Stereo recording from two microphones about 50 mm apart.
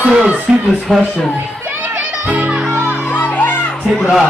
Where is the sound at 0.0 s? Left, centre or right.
Right.